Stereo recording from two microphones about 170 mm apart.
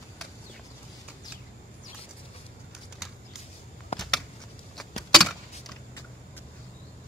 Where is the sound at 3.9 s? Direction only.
35° left (ahead or behind).